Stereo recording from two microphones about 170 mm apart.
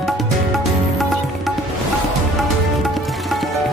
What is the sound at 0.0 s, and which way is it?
Music, centre (ahead or behind).